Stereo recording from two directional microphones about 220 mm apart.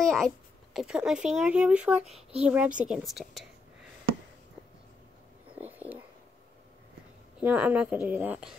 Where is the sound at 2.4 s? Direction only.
5° right (ahead or behind).